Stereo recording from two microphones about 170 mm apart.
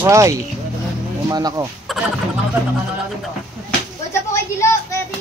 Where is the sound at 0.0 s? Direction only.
15° right (ahead or behind).